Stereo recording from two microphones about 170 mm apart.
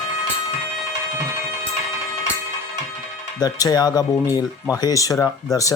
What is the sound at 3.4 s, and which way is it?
Speech, 20° left (ahead or behind).